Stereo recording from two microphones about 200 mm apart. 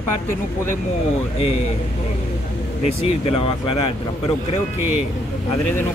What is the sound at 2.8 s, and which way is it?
Speech, 30° left (ahead or behind).